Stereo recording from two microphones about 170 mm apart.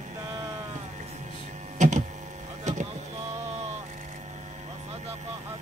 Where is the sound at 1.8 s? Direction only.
45° right (ahead or behind).